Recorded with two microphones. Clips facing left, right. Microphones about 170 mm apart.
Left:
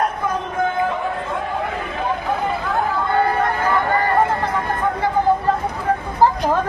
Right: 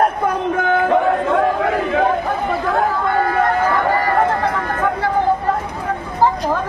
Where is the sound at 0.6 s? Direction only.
70° right (ahead or behind).